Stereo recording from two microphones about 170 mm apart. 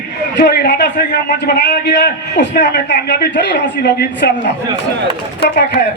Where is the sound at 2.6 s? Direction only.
80° left.